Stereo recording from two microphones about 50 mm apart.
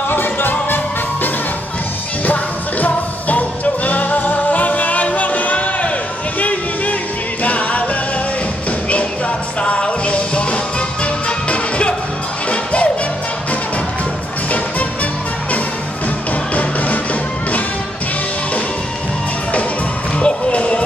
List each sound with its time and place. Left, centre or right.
0.1 s music: left
2.2 s music: left
7.4 s music: left
9.6 s music: left
16.5 s music: left
20.2 s music: left